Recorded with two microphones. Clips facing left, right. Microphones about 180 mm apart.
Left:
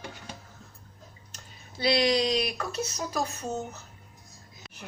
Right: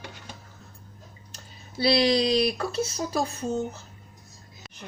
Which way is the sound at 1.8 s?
30° right (ahead or behind).